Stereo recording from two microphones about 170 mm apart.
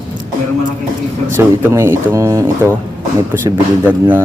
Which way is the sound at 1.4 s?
15° right (ahead or behind).